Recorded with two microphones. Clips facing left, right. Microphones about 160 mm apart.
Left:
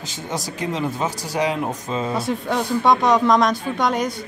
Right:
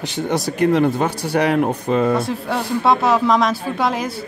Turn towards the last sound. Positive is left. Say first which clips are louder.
# even
turn(degrees=-5)  # may be behind; listen again after turning